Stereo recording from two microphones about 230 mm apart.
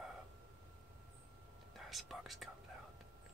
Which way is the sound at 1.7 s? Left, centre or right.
Centre.